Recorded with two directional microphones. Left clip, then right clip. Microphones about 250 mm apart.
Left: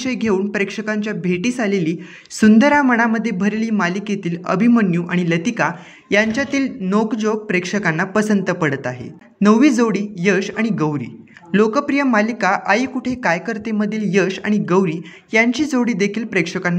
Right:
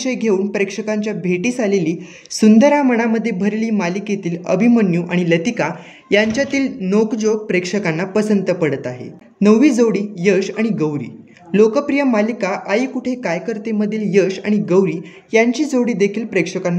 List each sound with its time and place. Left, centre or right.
0.0 s speech: centre